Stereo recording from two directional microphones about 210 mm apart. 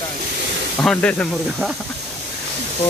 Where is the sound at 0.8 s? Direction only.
5° left (ahead or behind).